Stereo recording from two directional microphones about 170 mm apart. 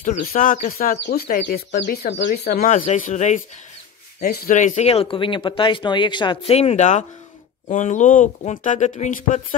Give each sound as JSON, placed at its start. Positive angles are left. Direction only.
{"t": 0.0, "sound": "speech", "side_deg": 40}
{"t": 0.3, "sound": "speech", "side_deg": 55}
{"t": 0.9, "sound": "speech", "side_deg": 75}
{"t": 2.1, "sound": "speech", "side_deg": 80}
{"t": 3.0, "sound": "speech", "side_deg": 45}
{"t": 4.2, "sound": "speech", "side_deg": 65}
{"t": 4.6, "sound": "speech", "side_deg": 45}